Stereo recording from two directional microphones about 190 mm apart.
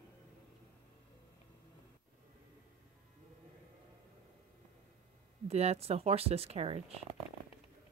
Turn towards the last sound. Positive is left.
turn(degrees=35)  # may be behind; listen again after turning